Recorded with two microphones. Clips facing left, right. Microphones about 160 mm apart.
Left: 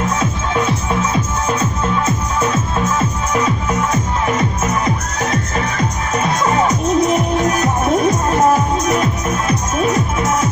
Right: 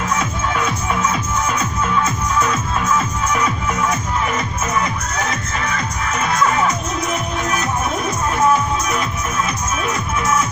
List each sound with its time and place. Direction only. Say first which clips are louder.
2.0 s music: left 1 dB; 25° left (ahead or behind)
6.1 s music: left 2 dB; 35° left (ahead or behind)